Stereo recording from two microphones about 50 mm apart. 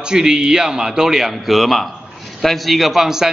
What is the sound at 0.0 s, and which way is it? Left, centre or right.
A man's voice, centre.